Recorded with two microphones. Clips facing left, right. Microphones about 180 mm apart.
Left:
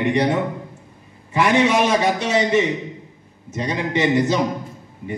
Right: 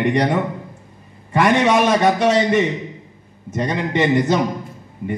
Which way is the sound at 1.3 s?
55° right (ahead or behind).